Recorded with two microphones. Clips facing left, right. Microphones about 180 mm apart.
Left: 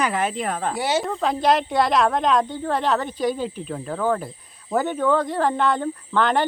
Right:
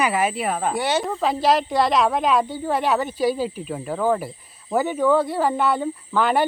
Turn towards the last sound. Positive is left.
turn(degrees=-10)  # may be behind; listen again after turning